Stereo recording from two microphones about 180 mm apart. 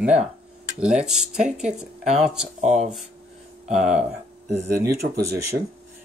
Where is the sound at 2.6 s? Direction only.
40° right (ahead or behind).